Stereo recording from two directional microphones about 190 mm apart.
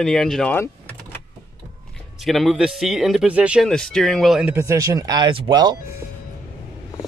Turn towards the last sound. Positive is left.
turn(degrees=-20)  # may be behind; listen again after turning